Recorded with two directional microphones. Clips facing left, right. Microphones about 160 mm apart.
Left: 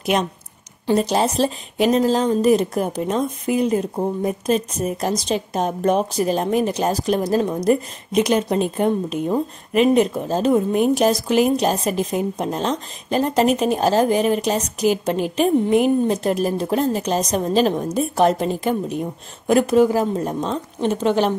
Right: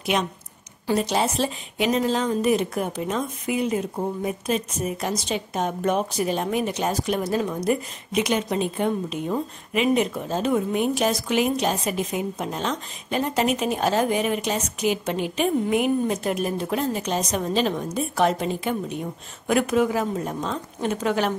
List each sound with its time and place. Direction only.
0.0 s a woman's voice: 45° left (ahead or behind)